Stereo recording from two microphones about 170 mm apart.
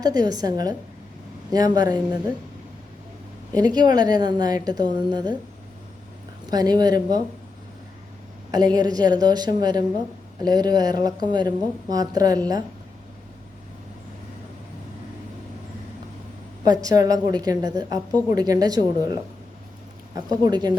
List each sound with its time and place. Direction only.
0.0 s a woman's voice: 25° right (ahead or behind)
3.5 s a woman's voice: 25° right (ahead or behind)
6.5 s a woman's voice: 25° right (ahead or behind)
8.5 s a woman's voice: 25° right (ahead or behind)
16.6 s a woman's voice: 20° right (ahead or behind)
20.1 s a woman's voice: 25° right (ahead or behind)